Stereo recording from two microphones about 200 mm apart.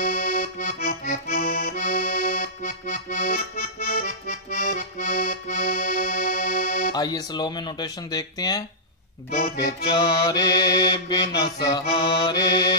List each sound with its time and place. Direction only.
0.0 s accordion: 40° left (ahead or behind)
6.9 s speech: 20° left (ahead or behind)
9.9 s speech: 20° left (ahead or behind)